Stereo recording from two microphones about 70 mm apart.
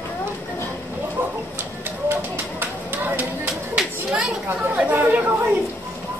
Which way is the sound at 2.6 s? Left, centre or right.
Right.